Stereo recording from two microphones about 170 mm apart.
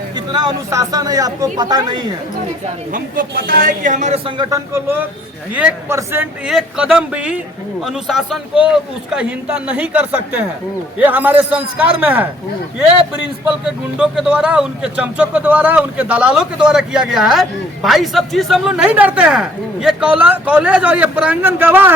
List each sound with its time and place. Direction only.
0.3 s speech: 25° right (ahead or behind)
2.9 s speech: 55° right (ahead or behind)
4.4 s speech: 20° right (ahead or behind)
6.5 s speech: centre (ahead or behind)
14.0 s speech: 5° right (ahead or behind)